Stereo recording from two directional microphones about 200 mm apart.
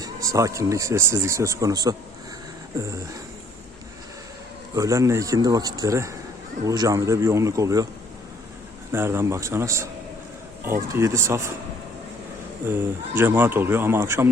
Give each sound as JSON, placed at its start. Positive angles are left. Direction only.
{"t": 0.0, "sound": "speech", "side_deg": -15}
{"t": 4.7, "sound": "speech", "side_deg": -15}
{"t": 8.9, "sound": "speech", "side_deg": -10}
{"t": 12.6, "sound": "speech", "side_deg": -10}